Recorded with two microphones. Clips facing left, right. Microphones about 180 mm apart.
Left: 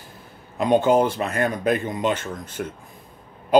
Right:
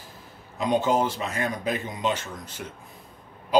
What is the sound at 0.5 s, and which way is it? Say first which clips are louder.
Speech: left 5 dB; 60° left (ahead or behind).